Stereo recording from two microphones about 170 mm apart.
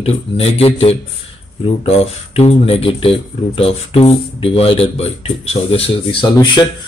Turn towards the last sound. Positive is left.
turn(degrees=25)  # may be behind; listen again after turning